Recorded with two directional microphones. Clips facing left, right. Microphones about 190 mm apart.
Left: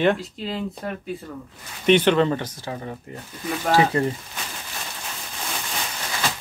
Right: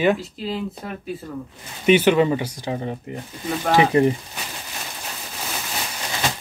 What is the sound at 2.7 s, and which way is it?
Speech, 20° right (ahead or behind).